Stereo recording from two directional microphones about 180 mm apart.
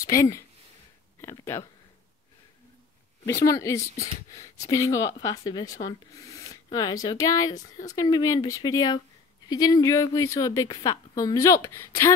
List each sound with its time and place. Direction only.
0.0 s speech: 20° left (ahead or behind)
3.4 s speech: 15° left (ahead or behind)